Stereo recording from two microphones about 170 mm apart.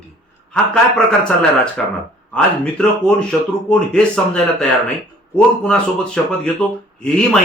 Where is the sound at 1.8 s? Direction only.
Centre (ahead or behind).